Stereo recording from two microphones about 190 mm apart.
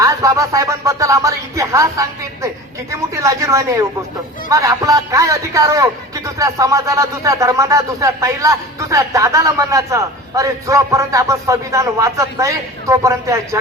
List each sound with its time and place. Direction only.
0.0 s speech: 15° right (ahead or behind)